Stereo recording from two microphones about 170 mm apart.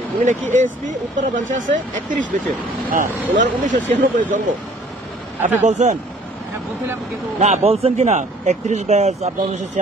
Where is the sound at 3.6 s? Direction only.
50° right (ahead or behind).